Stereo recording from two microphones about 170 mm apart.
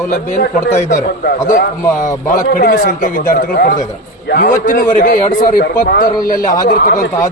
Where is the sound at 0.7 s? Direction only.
45° left (ahead or behind).